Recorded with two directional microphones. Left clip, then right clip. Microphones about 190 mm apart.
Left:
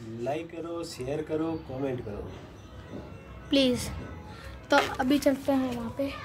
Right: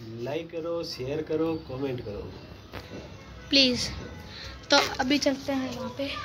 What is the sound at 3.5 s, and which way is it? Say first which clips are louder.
A woman's voice: right 3 dB; 10° left (ahead or behind).